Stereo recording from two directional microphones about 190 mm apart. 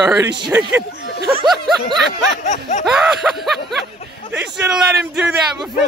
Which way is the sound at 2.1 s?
40° left (ahead or behind).